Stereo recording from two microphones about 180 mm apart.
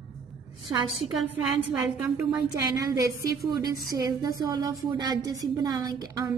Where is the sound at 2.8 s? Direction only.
20° right (ahead or behind).